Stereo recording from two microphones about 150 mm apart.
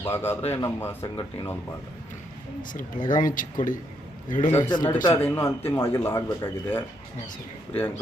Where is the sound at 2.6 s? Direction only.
65° left (ahead or behind).